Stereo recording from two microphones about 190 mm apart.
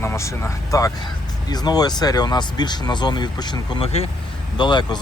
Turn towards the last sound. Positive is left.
turn(degrees=25)  # may be behind; listen again after turning